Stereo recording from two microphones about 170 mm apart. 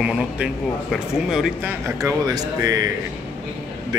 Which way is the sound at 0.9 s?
5° right (ahead or behind).